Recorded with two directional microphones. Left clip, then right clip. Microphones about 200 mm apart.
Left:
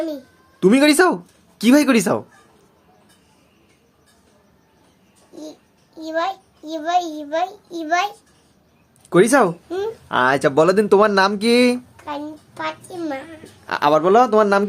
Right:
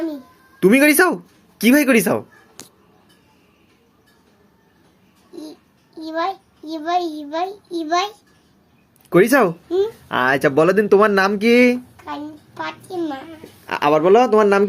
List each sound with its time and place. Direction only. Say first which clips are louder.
0.6 s speech: right 1 dB; 5° left (ahead or behind)
5.3 s a child's voice: even; 25° left (ahead or behind)
9.0 s speech: even; centre (ahead or behind)
12.0 s a child's voice: left 1 dB; 20° left (ahead or behind)
13.7 s speech: right 1 dB; centre (ahead or behind)